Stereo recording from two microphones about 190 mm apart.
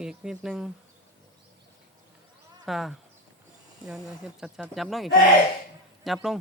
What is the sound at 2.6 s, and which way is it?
Speech, centre (ahead or behind).